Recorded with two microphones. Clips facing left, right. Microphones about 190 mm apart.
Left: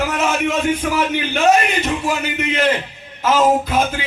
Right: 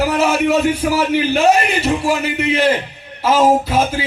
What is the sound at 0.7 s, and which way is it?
A man's voice, 30° right (ahead or behind).